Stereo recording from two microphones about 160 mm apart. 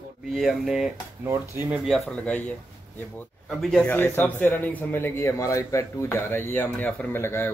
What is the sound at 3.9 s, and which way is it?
A man's voice, 15° left (ahead or behind).